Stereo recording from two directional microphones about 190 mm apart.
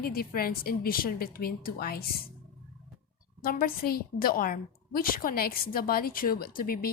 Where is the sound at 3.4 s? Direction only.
50° left (ahead or behind).